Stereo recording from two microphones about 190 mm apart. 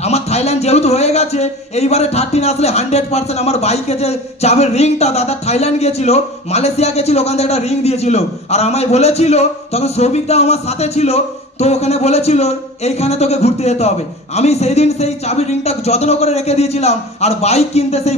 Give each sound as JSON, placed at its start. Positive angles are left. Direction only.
{"t": 0.0, "sound": "a man's voice", "side_deg": 35}